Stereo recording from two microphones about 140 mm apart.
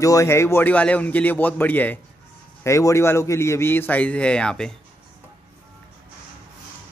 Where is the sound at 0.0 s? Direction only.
20° left (ahead or behind); by 4.7 s 5° left (ahead or behind).